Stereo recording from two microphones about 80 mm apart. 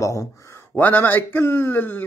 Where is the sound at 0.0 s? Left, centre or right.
Left.